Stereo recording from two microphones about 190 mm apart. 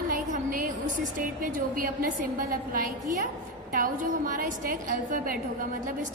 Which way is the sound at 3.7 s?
45° right (ahead or behind).